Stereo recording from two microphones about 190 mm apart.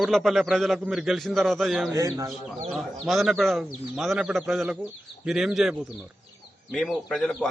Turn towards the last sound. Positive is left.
turn(degrees=0)  # may be behind; listen again after turning